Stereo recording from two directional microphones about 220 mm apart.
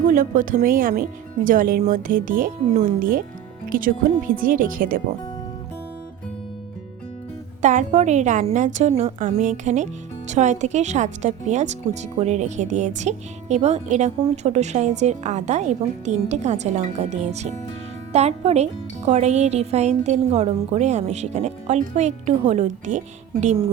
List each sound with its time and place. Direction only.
0.0 s a woman's voice: 40° right (ahead or behind)
7.6 s a woman's voice: 35° right (ahead or behind)